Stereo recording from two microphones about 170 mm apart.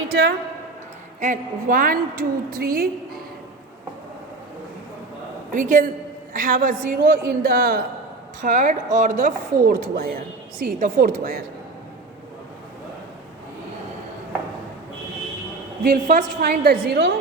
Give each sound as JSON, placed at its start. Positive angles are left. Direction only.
{"t": 0.1, "sound": "a woman's voice", "side_deg": -85}
{"t": 1.2, "sound": "a woman's voice", "side_deg": -50}
{"t": 5.5, "sound": "a woman's voice", "side_deg": -50}
{"t": 8.4, "sound": "a woman's voice", "side_deg": -50}
{"t": 15.8, "sound": "a woman's voice", "side_deg": -60}